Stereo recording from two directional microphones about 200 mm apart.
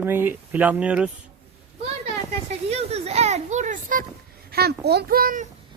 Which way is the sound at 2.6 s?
30° right (ahead or behind).